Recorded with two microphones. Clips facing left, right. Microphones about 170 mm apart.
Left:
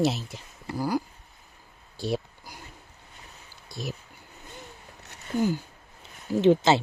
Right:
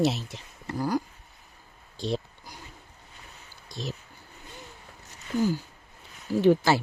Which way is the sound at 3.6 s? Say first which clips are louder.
Even; 10° left (ahead or behind).